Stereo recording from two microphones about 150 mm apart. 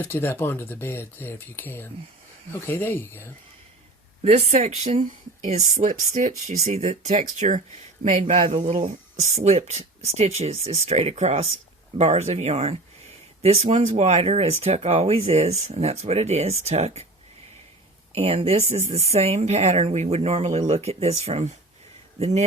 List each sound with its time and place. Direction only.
0.0 s speech: 15° left (ahead or behind)
4.2 s speech: 45° right (ahead or behind)
18.1 s speech: 40° right (ahead or behind)